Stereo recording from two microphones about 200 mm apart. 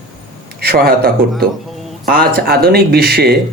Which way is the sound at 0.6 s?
50° right (ahead or behind).